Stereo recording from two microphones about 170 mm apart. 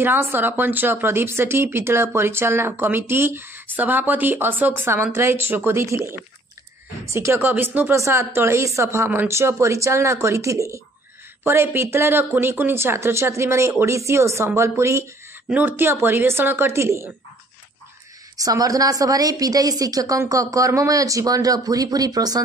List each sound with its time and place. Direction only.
0.0 s speech: 10° right (ahead or behind)
18.4 s a woman's voice: 20° right (ahead or behind)